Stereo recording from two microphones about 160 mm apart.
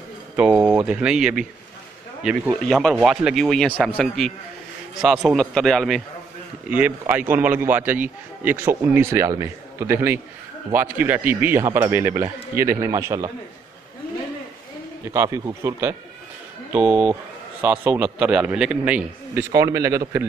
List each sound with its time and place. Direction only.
0.4 s speech: 10° right (ahead or behind)
6.7 s a man's voice: 10° right (ahead or behind)
15.1 s a man's voice: 20° right (ahead or behind)
19.5 s speech: 20° right (ahead or behind)